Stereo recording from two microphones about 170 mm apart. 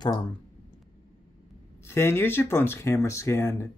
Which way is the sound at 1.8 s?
15° left (ahead or behind).